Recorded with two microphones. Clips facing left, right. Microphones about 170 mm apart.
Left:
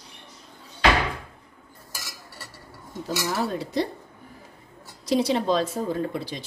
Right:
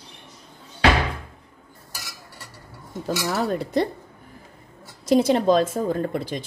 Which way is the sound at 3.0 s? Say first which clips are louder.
Right 3 dB; 55° right (ahead or behind).